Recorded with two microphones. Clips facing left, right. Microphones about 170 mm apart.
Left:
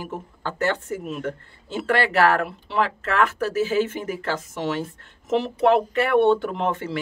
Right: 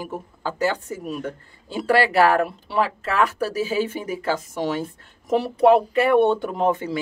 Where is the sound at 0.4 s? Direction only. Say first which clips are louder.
Right 1 dB; 10° right (ahead or behind).